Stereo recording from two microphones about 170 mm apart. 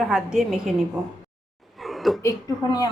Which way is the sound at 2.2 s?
20° left (ahead or behind).